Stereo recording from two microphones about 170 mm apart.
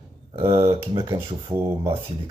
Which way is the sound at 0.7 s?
20° right (ahead or behind).